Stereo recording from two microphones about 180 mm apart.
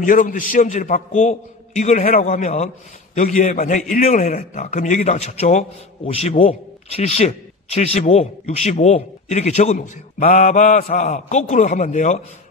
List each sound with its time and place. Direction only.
0.0 s a man's voice: 45° left (ahead or behind)